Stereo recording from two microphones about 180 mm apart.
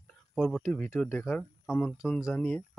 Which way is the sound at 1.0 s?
10° left (ahead or behind).